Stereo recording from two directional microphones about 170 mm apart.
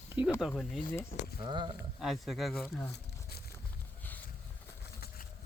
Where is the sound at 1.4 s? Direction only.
30° right (ahead or behind).